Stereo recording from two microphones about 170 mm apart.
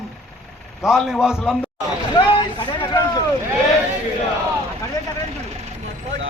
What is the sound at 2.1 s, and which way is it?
Speech, 25° left (ahead or behind).